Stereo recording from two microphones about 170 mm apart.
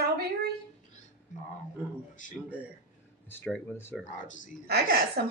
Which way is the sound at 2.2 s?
50° left (ahead or behind).